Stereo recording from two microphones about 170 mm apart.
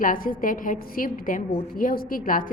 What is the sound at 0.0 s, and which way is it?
A woman's voice, 55° left (ahead or behind).